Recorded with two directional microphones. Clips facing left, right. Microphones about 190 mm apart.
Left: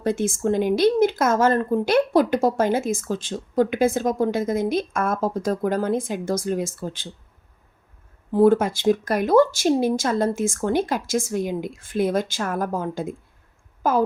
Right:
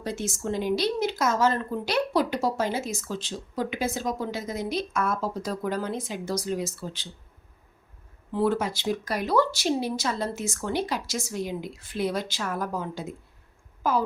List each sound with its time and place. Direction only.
0.0 s speech: 55° left (ahead or behind)
8.3 s speech: 50° left (ahead or behind)